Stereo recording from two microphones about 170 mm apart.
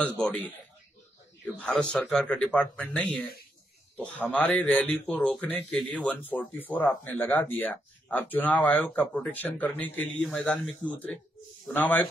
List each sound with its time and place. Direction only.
0.2 s speech: 10° left (ahead or behind)